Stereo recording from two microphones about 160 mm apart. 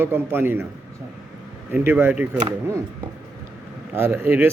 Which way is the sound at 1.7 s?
10° right (ahead or behind).